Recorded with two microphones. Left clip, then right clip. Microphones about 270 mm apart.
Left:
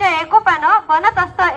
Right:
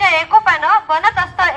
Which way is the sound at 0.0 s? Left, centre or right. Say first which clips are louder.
Right 1 dB; right.